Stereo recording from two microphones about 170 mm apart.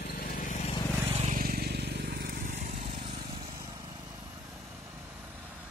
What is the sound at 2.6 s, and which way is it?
Vehicle, 35° right (ahead or behind).